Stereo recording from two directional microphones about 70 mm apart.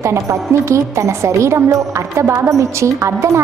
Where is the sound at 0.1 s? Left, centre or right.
Right.